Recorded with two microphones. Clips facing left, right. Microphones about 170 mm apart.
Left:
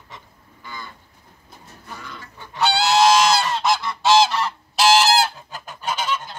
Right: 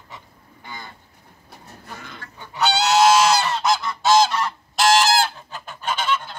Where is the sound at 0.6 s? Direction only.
55° right (ahead or behind).